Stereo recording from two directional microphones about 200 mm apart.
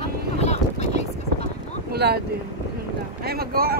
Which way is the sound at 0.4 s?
35° left (ahead or behind).